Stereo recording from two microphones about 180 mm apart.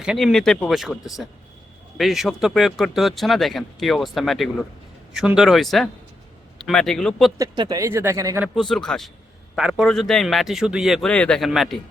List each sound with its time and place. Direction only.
0.0 s speech: centre (ahead or behind)
7.3 s speech: 20° right (ahead or behind)
8.7 s speech: centre (ahead or behind)